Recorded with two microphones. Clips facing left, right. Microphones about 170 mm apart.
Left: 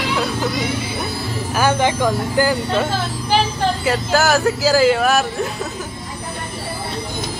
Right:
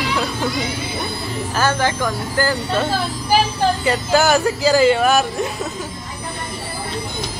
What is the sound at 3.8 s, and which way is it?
Speech, centre (ahead or behind).